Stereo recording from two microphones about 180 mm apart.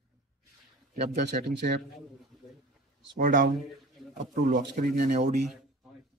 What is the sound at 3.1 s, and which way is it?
Speech, 50° right (ahead or behind).